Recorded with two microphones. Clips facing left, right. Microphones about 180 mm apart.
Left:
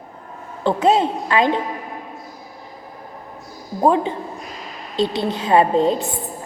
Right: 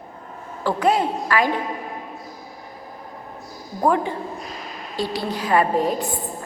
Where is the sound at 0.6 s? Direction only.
25° left (ahead or behind).